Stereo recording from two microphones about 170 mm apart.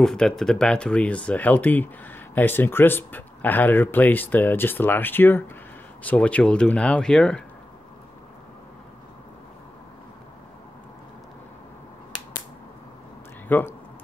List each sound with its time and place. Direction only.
0.0 s speech: 5° left (ahead or behind)
13.5 s speech: 10° left (ahead or behind)